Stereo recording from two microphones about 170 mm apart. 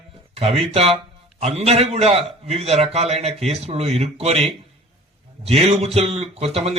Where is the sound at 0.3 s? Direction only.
35° right (ahead or behind).